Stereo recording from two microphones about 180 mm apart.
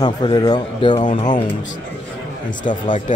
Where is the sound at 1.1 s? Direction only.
45° left (ahead or behind).